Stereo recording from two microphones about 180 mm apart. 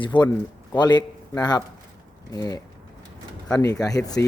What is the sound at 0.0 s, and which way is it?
A man's voice, 25° left (ahead or behind).